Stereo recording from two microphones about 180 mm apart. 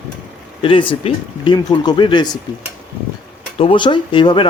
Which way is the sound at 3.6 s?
30° left (ahead or behind).